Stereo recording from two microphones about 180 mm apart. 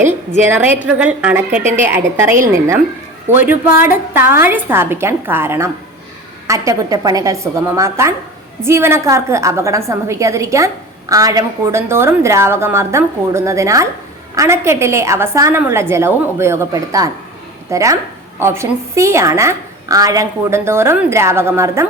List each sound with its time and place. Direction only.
0.4 s a woman's voice: 10° right (ahead or behind)